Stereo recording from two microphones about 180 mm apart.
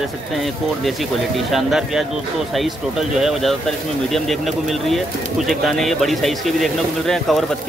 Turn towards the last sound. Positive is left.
turn(degrees=0)  # may be behind; listen again after turning